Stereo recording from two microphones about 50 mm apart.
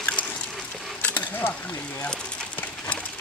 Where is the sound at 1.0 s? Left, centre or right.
Left.